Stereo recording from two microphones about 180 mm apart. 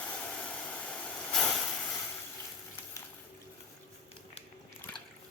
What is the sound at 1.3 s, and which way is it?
Vehicle, centre (ahead or behind).